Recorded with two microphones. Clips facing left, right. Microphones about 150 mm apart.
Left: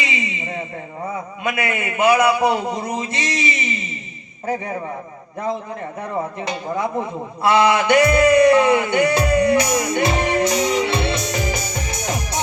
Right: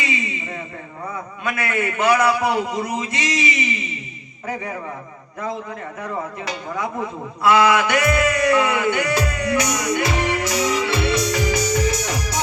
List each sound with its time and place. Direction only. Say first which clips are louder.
0.0 s a sound: even; 20° left (ahead or behind)
1.5 s a man's voice: even; 20° left (ahead or behind)
6.0 s a man's voice: left 3 dB; 25° left (ahead or behind)
12.0 s music: left 1 dB; 25° left (ahead or behind)